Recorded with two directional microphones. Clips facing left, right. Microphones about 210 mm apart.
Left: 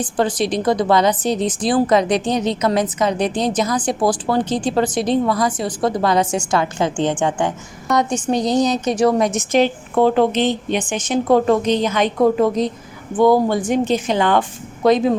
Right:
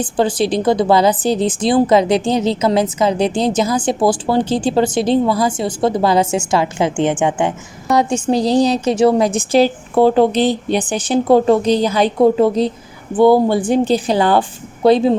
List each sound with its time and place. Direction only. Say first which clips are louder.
0.0 s a woman's voice: right 3 dB; 30° right (ahead or behind)